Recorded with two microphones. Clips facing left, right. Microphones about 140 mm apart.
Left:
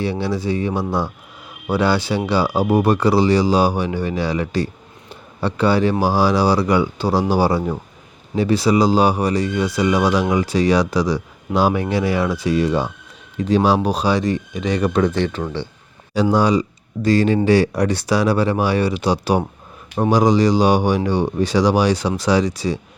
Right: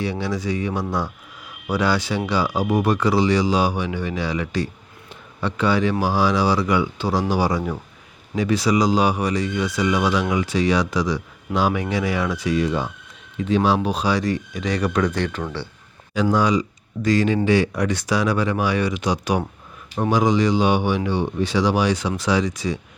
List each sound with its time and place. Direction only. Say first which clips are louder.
0.0 s speech: left 3 dB; 30° left (ahead or behind)
16.3 s speech: left 3 dB; 35° left (ahead or behind)